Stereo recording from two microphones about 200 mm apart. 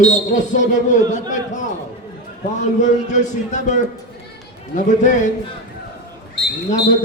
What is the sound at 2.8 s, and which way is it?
A man's voice, 35° left (ahead or behind).